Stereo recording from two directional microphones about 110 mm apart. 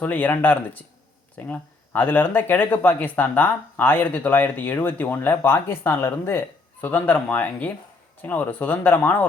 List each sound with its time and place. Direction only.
0.0 s speech: 15° left (ahead or behind)